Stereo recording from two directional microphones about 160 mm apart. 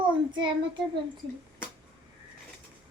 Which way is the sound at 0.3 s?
30° right (ahead or behind).